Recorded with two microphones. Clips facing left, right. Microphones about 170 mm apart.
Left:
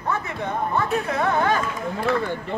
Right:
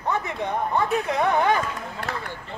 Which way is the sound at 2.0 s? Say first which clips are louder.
Left 9 dB; 60° left (ahead or behind).